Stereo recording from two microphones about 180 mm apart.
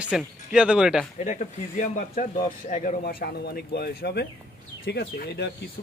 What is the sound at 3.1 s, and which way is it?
Speech, 60° left (ahead or behind).